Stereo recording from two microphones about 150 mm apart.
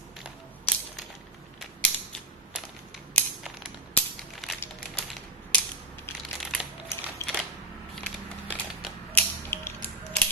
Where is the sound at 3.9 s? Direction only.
Centre (ahead or behind).